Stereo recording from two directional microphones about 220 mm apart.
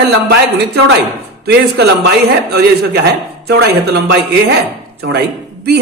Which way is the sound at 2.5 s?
45° right (ahead or behind).